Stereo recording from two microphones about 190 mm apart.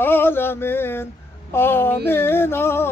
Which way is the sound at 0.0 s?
10° left (ahead or behind).